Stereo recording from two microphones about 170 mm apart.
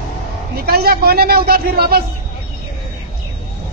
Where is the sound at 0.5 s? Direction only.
65° right (ahead or behind).